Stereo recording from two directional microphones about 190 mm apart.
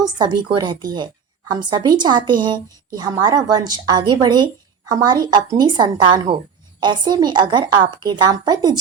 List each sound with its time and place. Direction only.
0.0 s a woman's voice: 20° right (ahead or behind)